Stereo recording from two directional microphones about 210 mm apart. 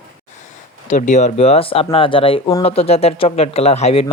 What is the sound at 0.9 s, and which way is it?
Speech, 35° left (ahead or behind).